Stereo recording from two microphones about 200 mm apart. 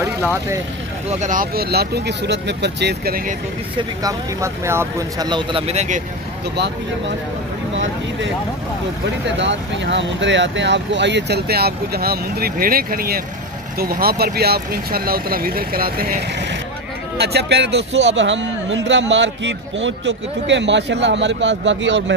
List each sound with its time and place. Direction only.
0.0 s speech: 10° right (ahead or behind)
1.2 s speech: 45° right (ahead or behind)
3.7 s speech: 15° right (ahead or behind); by 6.0 s 35° right (ahead or behind)
6.5 s a man's voice: 60° right (ahead or behind)
9.4 s a man's voice: 65° right (ahead or behind)